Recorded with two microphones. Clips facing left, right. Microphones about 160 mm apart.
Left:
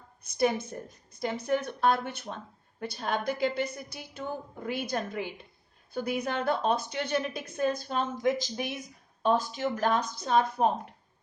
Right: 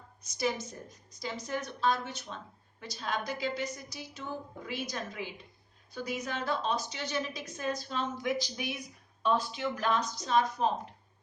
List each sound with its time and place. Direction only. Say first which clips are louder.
0.2 s a woman's voice: left 6 dB; 55° left (ahead or behind)